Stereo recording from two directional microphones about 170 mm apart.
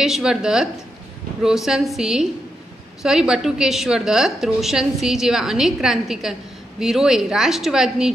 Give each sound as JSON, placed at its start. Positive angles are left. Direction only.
{"t": 0.0, "sound": "a woman's voice", "side_deg": -5}